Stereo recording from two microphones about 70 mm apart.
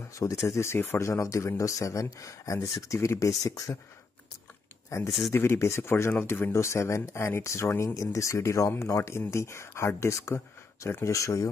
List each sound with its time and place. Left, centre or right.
0.1 s speech: left
4.8 s a sound: left
5.3 s speech: left